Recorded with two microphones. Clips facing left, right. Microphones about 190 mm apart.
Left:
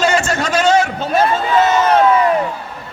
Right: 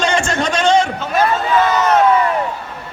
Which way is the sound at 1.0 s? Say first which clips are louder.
Left 1 dB; 25° left (ahead or behind).